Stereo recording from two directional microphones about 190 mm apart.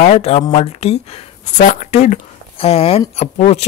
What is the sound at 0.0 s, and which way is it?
Speech, 35° left (ahead or behind).